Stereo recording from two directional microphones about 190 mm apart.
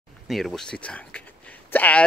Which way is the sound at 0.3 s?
Centre (ahead or behind).